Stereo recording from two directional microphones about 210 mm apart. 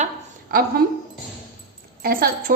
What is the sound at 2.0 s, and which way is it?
Speech, 45° right (ahead or behind).